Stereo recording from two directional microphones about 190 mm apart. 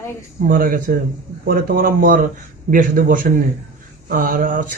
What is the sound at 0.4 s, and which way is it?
A man's voice, 50° right (ahead or behind).